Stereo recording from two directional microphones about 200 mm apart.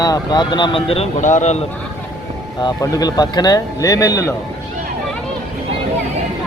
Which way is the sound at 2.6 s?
20° left (ahead or behind).